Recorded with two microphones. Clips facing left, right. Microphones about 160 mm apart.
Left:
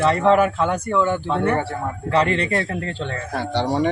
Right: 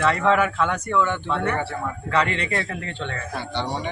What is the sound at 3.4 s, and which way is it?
Speech, 85° left.